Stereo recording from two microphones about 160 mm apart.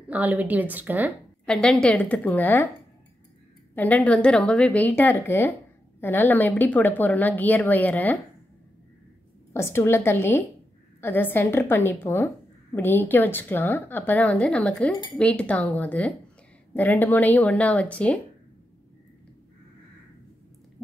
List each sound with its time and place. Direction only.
0.1 s a woman's voice: 10° right (ahead or behind)
1.4 s a woman's voice: 5° left (ahead or behind)
3.7 s a woman's voice: 10° left (ahead or behind)
9.5 s a woman's voice: 15° left (ahead or behind)